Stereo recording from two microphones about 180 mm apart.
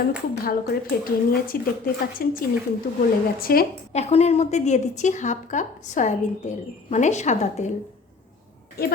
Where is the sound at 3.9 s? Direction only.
35° left (ahead or behind).